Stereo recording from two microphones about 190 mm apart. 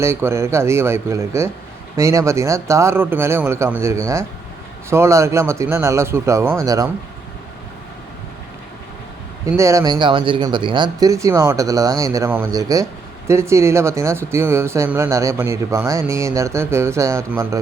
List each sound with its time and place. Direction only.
0.0 s speech: 15° right (ahead or behind)
9.5 s speech: 15° right (ahead or behind)